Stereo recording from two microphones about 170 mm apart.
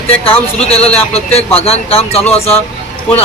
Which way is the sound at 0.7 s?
35° left (ahead or behind).